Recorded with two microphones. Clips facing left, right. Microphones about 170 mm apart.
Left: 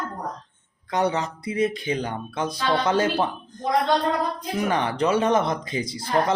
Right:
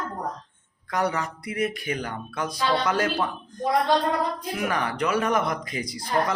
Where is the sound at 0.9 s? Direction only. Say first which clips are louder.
Left 3 dB; 25° left (ahead or behind).